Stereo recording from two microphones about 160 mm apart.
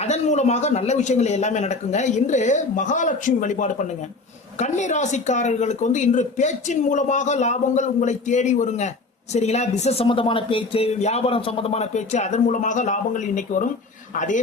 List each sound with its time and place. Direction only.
0.0 s speech: 45° left (ahead or behind)